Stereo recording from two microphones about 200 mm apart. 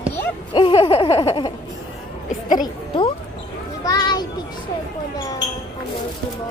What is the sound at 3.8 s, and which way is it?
Speech, 20° left (ahead or behind).